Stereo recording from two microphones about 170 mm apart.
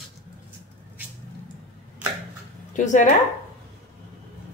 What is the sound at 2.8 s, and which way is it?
Speech, 45° left (ahead or behind).